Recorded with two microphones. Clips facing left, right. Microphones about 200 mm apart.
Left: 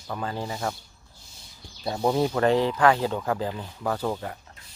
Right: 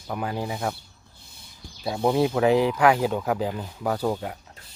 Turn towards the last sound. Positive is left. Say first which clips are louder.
# right 2 dB
turn(degrees=-10)  # may be behind; listen again after turning